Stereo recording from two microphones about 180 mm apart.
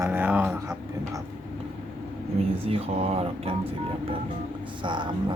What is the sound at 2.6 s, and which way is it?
Speech, 35° right (ahead or behind).